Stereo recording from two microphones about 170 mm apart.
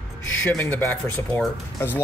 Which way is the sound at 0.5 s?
10° left (ahead or behind).